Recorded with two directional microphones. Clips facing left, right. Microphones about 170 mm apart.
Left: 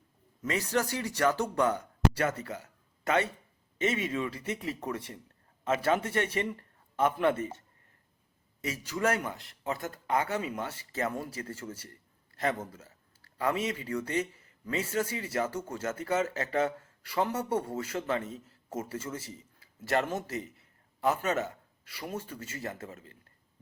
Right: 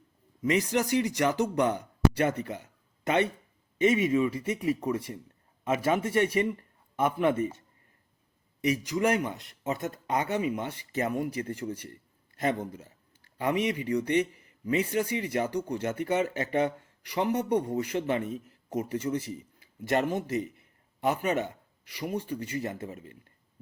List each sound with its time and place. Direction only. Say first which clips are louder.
0.4 s speech: right 4 dB; 15° right (ahead or behind)
8.6 s speech: right 4 dB; 15° right (ahead or behind)